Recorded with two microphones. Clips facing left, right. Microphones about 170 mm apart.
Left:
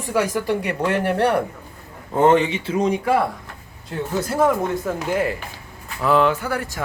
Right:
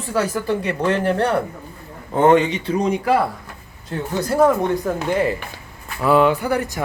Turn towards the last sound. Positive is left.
turn(degrees=-15)  # may be behind; listen again after turning